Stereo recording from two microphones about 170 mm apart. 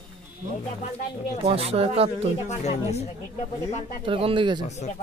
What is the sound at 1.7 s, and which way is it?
Speech, 35° right (ahead or behind).